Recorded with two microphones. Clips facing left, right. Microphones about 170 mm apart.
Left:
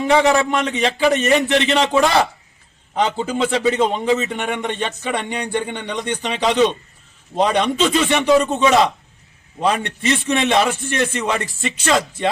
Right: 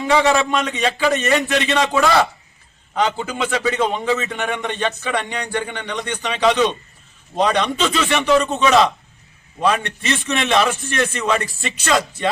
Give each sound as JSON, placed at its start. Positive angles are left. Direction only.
{"t": 0.1, "sound": "a man's voice", "side_deg": 15}